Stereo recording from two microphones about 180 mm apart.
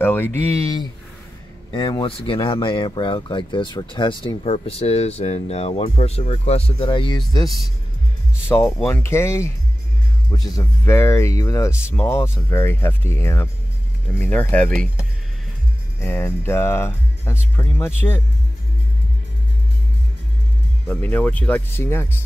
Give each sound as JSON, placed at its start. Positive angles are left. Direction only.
{"t": 0.0, "sound": "a sound", "side_deg": 10}
{"t": 0.5, "sound": "speech", "side_deg": 20}
{"t": 16.0, "sound": "speech", "side_deg": 10}
{"t": 20.8, "sound": "speech", "side_deg": 10}